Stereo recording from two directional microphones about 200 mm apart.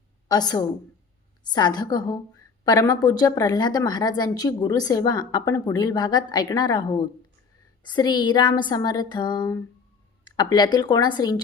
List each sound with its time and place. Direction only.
0.3 s a woman's voice: 20° left (ahead or behind)